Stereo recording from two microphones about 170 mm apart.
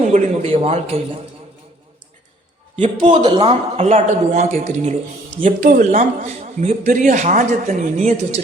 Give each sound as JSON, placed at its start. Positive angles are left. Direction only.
{"t": 0.1, "sound": "a man's voice", "side_deg": -35}
{"t": 2.7, "sound": "a man's voice", "side_deg": -40}
{"t": 3.1, "sound": "a man's voice", "side_deg": -25}
{"t": 3.4, "sound": "a man's voice", "side_deg": -40}